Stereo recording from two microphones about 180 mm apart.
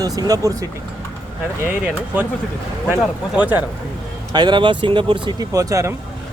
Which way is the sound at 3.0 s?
10° right (ahead or behind).